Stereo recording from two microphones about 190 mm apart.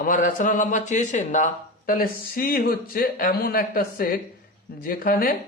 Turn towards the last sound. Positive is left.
turn(degrees=50)  # may be behind; listen again after turning